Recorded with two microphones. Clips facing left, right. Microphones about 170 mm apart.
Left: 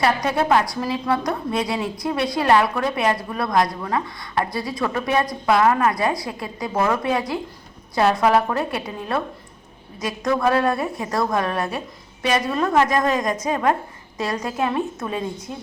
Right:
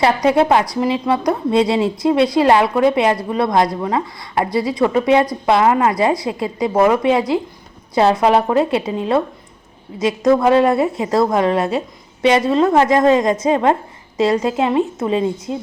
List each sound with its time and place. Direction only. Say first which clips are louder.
0.0 s a woman's voice: right 6 dB; 25° right (ahead or behind)